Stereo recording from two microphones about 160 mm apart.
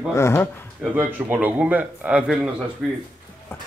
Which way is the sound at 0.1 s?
15° left (ahead or behind).